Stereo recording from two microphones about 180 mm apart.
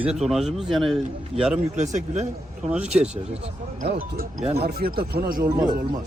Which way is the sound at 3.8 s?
45° right (ahead or behind).